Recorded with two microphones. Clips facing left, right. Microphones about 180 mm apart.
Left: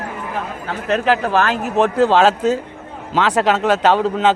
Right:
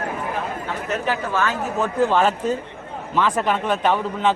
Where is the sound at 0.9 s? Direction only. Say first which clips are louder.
Left 8 dB; 85° left.